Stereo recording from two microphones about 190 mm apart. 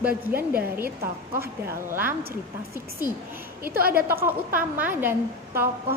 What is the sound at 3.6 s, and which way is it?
Speech, 50° right (ahead or behind).